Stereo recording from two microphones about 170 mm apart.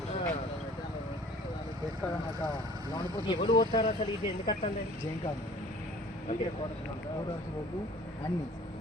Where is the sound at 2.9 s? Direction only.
25° left (ahead or behind).